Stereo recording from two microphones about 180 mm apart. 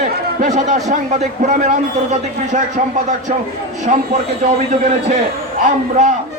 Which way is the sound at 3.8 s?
40° right (ahead or behind).